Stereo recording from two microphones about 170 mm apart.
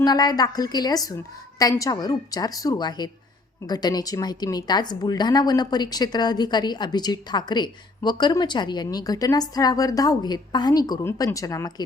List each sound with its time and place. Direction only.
0.0 s speech: 25° left (ahead or behind)